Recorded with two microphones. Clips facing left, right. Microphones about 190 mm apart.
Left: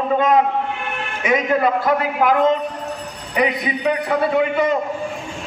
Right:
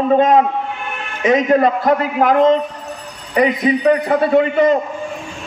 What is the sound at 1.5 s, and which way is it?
A man's voice, 40° right (ahead or behind).